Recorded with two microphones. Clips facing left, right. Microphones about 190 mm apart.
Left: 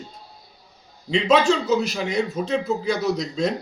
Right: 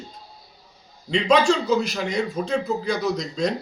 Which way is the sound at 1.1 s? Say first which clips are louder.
Even; 5° left (ahead or behind).